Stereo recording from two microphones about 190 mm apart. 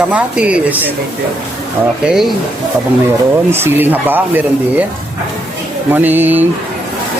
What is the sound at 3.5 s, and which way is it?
Speech, 10° right (ahead or behind).